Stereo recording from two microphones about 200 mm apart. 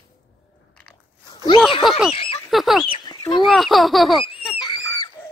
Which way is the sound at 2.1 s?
25° left (ahead or behind).